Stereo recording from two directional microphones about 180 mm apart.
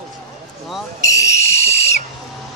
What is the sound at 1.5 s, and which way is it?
Whistle, 35° left (ahead or behind).